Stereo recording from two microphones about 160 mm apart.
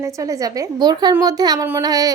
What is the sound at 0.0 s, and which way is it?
A woman's voice, 20° right (ahead or behind).